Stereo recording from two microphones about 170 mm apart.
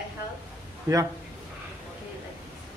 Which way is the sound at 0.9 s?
15° right (ahead or behind).